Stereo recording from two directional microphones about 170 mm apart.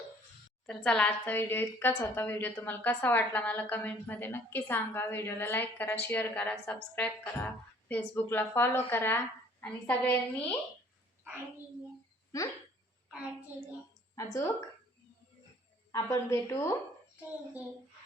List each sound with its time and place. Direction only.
0.7 s a woman's voice: 5° left (ahead or behind)
14.2 s a woman's voice: 15° left (ahead or behind)
15.9 s a woman's voice: 20° left (ahead or behind)